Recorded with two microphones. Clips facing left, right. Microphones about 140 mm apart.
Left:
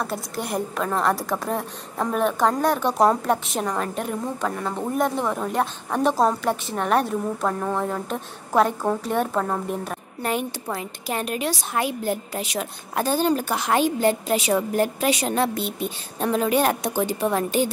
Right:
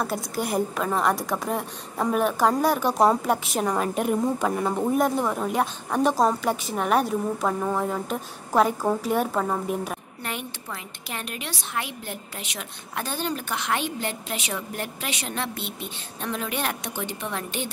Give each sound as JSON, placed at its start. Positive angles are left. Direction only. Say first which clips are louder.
{"t": 0.0, "sound": "a woman's voice", "louder": "right 1 dB", "side_deg": 0}
{"t": 10.2, "sound": "a woman's voice", "louder": "left 10 dB", "side_deg": 40}